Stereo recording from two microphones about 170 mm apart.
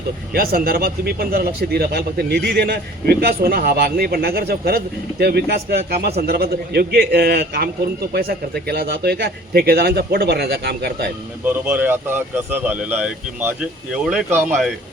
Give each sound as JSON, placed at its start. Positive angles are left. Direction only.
{"t": 0.3, "sound": "speech", "side_deg": -60}
{"t": 11.4, "sound": "speech", "side_deg": -10}